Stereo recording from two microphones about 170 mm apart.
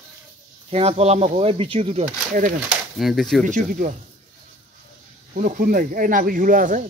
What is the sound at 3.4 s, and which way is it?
Speech, 50° right (ahead or behind).